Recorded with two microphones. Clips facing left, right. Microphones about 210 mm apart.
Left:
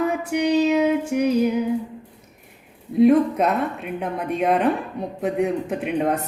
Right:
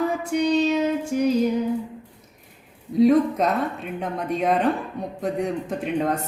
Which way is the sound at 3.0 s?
5° left (ahead or behind).